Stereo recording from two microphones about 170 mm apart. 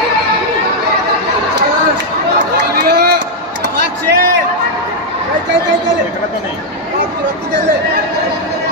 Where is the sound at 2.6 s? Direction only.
75° right (ahead or behind).